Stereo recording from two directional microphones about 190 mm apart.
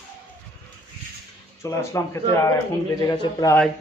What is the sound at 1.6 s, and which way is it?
Speech, 15° left (ahead or behind).